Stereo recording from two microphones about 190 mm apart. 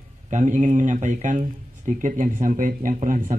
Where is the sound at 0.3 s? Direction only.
40° right (ahead or behind).